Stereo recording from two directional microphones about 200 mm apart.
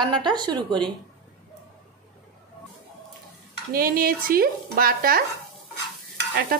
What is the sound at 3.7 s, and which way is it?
Stir, 45° right (ahead or behind).